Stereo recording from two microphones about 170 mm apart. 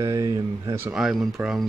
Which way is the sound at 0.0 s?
20° right (ahead or behind).